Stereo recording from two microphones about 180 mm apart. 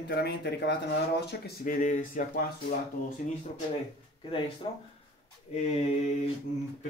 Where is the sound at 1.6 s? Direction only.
45° left (ahead or behind).